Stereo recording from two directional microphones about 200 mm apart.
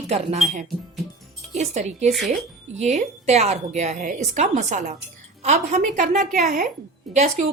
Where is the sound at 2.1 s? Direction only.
Centre (ahead or behind).